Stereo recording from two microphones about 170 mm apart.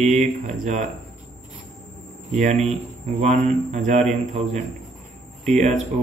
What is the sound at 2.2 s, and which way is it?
A man's voice, 45° right (ahead or behind).